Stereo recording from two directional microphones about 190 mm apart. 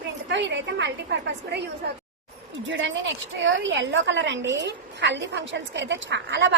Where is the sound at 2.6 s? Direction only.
80° right.